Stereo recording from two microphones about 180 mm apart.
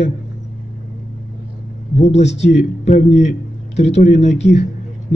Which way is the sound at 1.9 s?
40° left (ahead or behind).